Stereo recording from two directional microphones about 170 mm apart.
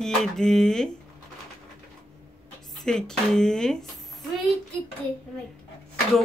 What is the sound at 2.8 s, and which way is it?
Speech, 5° left (ahead or behind).